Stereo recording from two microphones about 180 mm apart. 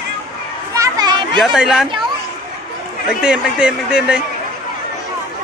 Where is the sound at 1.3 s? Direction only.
Centre (ahead or behind).